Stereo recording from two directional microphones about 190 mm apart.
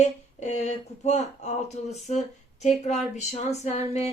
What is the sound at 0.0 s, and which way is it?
A woman's voice, 35° left (ahead or behind).